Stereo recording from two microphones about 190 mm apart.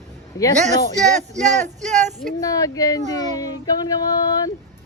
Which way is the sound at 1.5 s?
40° right (ahead or behind).